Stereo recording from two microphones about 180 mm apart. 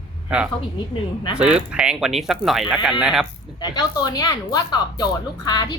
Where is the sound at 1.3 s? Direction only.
5° right (ahead or behind).